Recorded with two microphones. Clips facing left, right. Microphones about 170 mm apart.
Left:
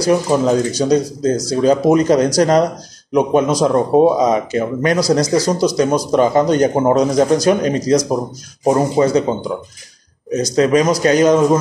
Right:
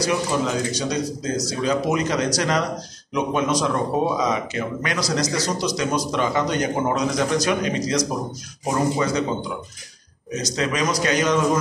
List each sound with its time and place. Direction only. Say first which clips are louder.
0.0 s speech: left 8 dB; 35° left (ahead or behind)
10.5 s speech: left 10 dB; 40° left (ahead or behind)